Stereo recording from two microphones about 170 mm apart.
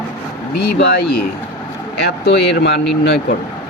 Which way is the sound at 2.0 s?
75° left (ahead or behind).